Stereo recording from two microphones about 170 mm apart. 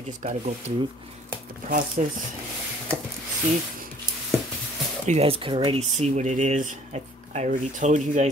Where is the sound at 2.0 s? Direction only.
45° right (ahead or behind).